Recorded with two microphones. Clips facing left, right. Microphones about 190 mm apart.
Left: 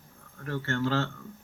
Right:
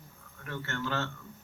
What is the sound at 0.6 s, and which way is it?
Speech, 55° left (ahead or behind).